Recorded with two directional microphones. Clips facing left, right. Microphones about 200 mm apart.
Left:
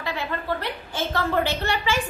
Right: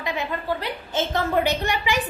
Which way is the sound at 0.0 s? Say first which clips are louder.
Right 2 dB; 15° right (ahead or behind).